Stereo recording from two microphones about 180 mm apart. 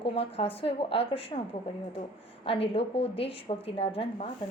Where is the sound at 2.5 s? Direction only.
30° left (ahead or behind).